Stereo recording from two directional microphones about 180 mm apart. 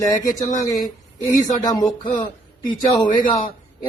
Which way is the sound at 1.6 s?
20° left (ahead or behind).